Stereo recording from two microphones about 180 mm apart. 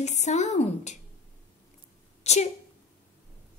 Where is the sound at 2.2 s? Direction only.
40° left (ahead or behind).